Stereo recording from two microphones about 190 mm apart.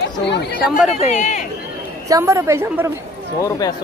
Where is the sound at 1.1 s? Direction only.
40° left (ahead or behind).